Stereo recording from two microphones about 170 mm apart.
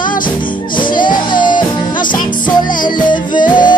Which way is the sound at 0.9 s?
25° left (ahead or behind).